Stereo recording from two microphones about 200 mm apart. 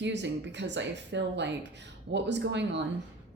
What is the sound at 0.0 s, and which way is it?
Speech, 60° right (ahead or behind).